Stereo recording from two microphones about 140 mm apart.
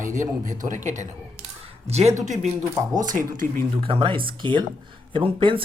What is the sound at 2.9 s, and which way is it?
Speech, 70° right (ahead or behind).